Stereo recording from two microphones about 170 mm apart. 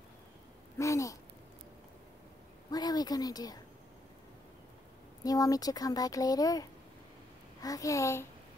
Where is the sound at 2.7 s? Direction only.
25° left (ahead or behind).